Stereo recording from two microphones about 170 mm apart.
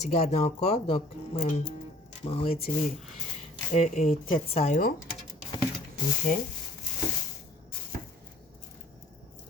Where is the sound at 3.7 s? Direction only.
40° left (ahead or behind).